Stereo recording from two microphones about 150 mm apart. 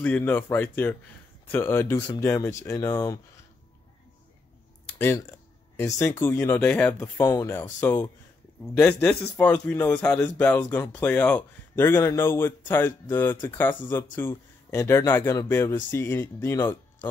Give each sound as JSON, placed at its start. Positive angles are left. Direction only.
{"t": 0.0, "sound": "speech", "side_deg": 10}
{"t": 4.9, "sound": "speech", "side_deg": 15}
{"t": 9.2, "sound": "speech", "side_deg": 15}